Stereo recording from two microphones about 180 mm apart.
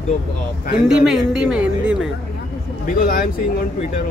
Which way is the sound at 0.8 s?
5° right (ahead or behind).